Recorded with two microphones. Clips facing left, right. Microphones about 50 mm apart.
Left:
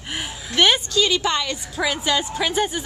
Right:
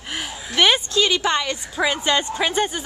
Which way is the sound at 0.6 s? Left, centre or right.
Centre.